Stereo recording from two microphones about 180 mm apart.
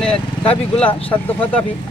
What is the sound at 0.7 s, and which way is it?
Speech, 10° left (ahead or behind).